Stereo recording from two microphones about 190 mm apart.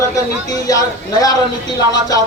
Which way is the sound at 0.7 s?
20° left (ahead or behind).